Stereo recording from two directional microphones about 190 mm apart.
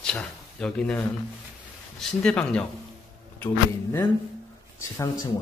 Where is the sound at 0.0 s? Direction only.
5° left (ahead or behind).